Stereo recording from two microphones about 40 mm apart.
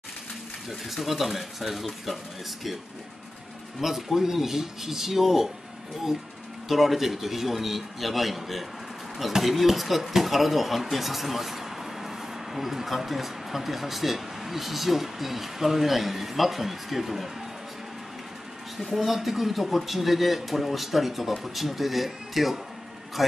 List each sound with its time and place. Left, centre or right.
0.7 s speech: centre
3.8 s speech: centre
6.7 s speech: centre
18.8 s speech: centre